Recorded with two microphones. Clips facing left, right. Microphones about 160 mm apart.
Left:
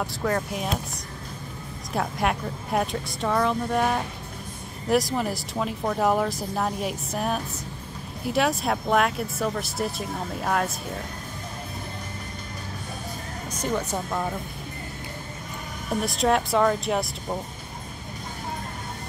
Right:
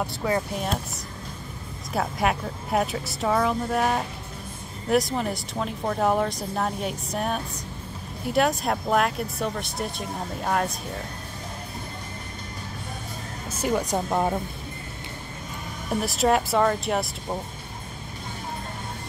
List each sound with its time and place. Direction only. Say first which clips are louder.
0.0 s speech: right 1 dB; 5° right (ahead or behind)
13.6 s speech: right 3 dB; 10° right (ahead or behind)
13.9 s speech: right 4 dB; 30° right (ahead or behind)
15.9 s speech: right 1 dB; centre (ahead or behind)